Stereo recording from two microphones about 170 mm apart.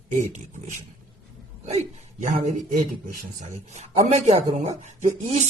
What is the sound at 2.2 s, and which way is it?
Speech, 50° right (ahead or behind).